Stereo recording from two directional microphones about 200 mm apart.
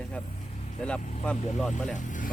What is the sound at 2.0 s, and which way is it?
Speech, 40° left (ahead or behind).